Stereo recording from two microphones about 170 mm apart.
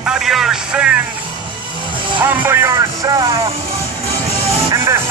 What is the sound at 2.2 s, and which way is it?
Speech, 10° right (ahead or behind).